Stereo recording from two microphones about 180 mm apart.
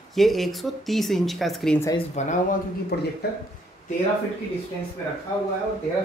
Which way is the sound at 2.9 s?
60° left (ahead or behind).